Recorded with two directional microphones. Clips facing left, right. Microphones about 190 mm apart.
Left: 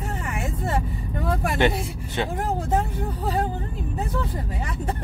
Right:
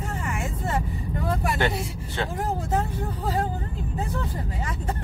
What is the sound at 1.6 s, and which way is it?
Speech, 20° left (ahead or behind).